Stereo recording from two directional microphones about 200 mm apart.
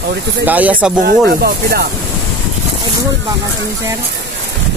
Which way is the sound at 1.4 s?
50° right (ahead or behind).